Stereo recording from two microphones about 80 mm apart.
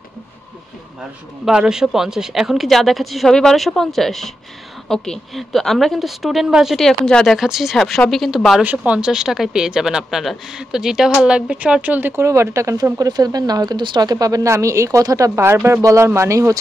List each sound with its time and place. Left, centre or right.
1.4 s speech: centre
7.3 s speech: centre
8.6 s speech: centre
12.2 s speech: right
13.0 s speech: right
14.1 s speech: right